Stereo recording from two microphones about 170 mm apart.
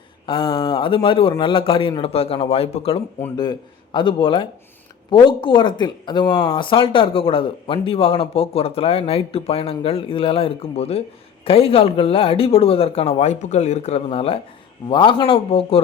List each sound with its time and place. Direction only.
0.3 s speech: 30° left (ahead or behind)
3.3 s a man's voice: 25° left (ahead or behind)